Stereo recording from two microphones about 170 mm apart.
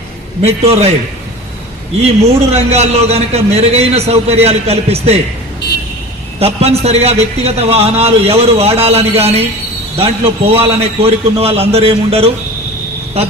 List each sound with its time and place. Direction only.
0.4 s a man's voice: 35° right (ahead or behind)
2.0 s a man's voice: 40° right (ahead or behind)
6.4 s a man's voice: 35° right (ahead or behind)